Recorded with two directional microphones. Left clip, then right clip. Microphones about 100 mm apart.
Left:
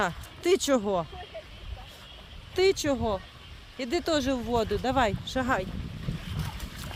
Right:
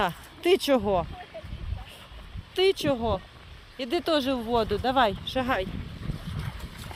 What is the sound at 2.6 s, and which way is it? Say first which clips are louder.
Speech: right 1 dB; 5° left (ahead or behind).